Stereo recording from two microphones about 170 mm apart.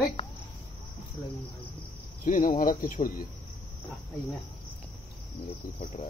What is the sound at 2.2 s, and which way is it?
Speech, 55° left (ahead or behind).